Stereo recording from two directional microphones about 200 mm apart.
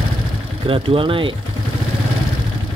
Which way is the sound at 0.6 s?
25° right (ahead or behind).